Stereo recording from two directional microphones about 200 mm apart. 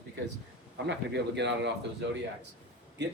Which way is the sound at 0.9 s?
60° right (ahead or behind).